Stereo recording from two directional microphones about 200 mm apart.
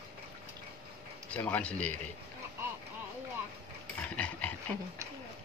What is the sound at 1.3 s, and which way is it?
Speech, 10° left (ahead or behind).